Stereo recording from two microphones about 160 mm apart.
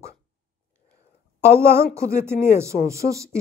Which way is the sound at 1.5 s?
15° right (ahead or behind).